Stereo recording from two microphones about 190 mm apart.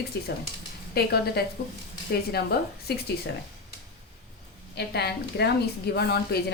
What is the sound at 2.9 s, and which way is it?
Speech, 60° left (ahead or behind).